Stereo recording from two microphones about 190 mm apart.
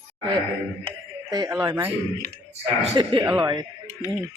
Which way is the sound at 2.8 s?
25° right (ahead or behind).